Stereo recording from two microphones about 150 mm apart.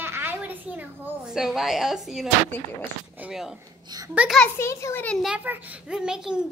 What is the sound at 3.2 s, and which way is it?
Speech, 5° right (ahead or behind).